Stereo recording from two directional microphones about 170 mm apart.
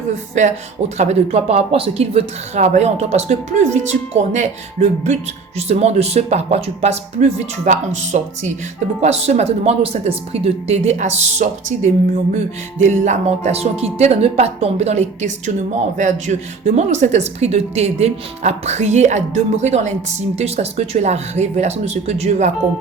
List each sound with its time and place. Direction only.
0.4 s speech: 45° right (ahead or behind)